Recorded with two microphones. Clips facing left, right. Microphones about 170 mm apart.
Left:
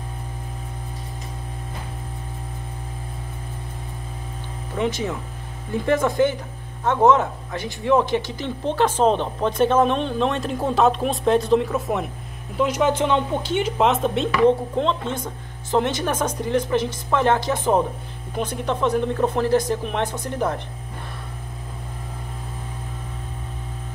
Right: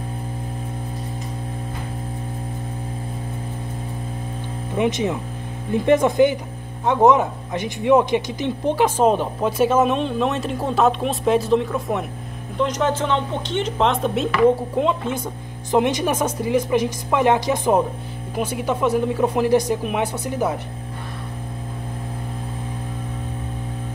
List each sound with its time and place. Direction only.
4.7 s speech: 20° right (ahead or behind)